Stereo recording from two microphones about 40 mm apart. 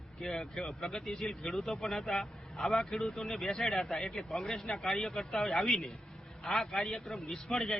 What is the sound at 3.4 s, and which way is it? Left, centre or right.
A man's voice, centre.